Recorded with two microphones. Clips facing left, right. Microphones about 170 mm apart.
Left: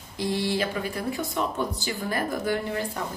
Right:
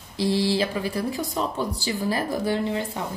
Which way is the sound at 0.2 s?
30° right (ahead or behind).